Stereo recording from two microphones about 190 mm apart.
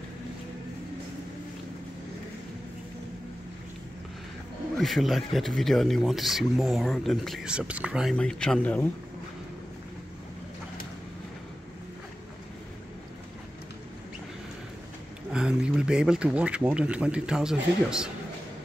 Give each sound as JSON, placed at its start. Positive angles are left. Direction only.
{"t": 4.7, "sound": "speech", "side_deg": 0}
{"t": 15.3, "sound": "speech", "side_deg": -5}